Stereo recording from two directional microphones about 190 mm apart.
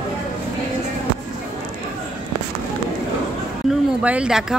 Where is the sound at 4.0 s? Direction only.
5° right (ahead or behind).